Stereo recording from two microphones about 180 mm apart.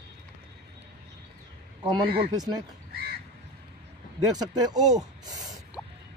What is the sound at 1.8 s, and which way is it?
Speech, 25° right (ahead or behind).